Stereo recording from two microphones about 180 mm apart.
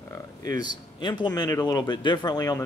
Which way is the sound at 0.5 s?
25° left (ahead or behind).